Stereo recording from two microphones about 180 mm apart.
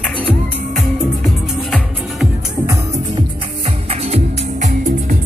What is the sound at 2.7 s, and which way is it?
Music, 15° right (ahead or behind).